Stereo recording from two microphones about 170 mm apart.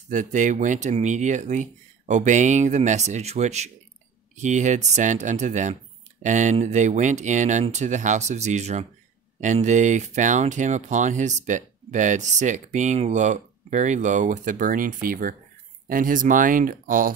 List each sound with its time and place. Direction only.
0.1 s speech: 45° right (ahead or behind)